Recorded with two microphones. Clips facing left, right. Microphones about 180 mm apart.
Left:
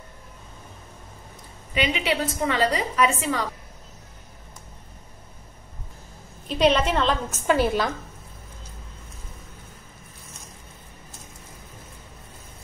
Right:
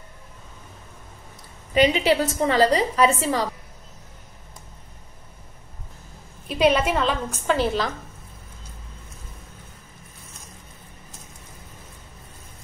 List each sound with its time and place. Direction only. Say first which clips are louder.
1.7 s a woman's voice: right 6 dB; 35° right (ahead or behind)
6.4 s a woman's voice: right 1 dB; 5° right (ahead or behind)
7.4 s a woman's voice: left 1 dB; 10° left (ahead or behind)